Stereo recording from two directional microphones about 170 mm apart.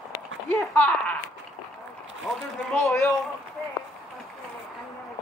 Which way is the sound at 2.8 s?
15° left (ahead or behind).